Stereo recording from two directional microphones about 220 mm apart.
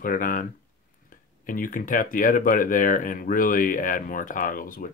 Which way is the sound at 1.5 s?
40° left (ahead or behind).